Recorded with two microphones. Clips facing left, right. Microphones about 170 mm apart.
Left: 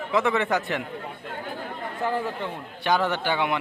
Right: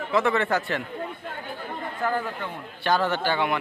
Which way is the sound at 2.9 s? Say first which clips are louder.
Even; 15° left (ahead or behind).